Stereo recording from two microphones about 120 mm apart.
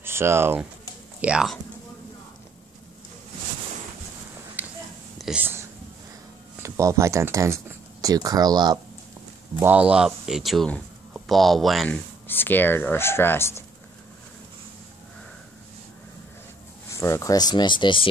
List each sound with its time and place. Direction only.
0.0 s speech: 20° right (ahead or behind)
1.2 s speech: 10° right (ahead or behind)
5.4 s a sound: 20° right (ahead or behind)
6.6 s speech: 25° right (ahead or behind)
9.6 s speech: 10° right (ahead or behind)
11.9 s speech: 15° left (ahead or behind)
16.9 s speech: 25° left (ahead or behind); by 18.0 s 40° left (ahead or behind)